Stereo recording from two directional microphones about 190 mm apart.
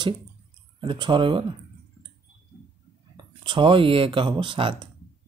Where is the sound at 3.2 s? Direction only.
25° right (ahead or behind).